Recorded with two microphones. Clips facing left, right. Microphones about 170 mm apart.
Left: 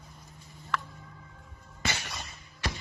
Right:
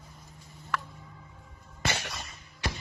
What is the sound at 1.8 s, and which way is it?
Cough, 65° right (ahead or behind).